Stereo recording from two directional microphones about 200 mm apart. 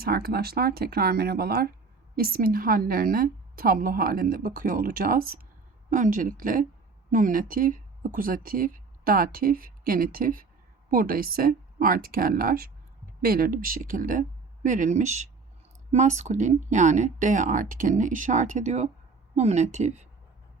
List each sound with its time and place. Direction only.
0.0 s speech: 50° right (ahead or behind); by 20.1 s 35° right (ahead or behind)